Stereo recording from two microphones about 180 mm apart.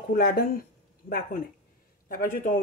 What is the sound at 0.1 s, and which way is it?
Speech, 55° left (ahead or behind).